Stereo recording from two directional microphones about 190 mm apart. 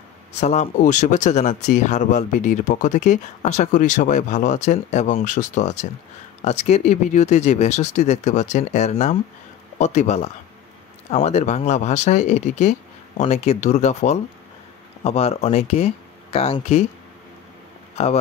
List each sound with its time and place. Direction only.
0.4 s speech: 35° left (ahead or behind)